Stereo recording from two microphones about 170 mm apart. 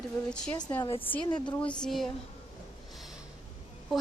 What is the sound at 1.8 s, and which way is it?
Speech, centre (ahead or behind).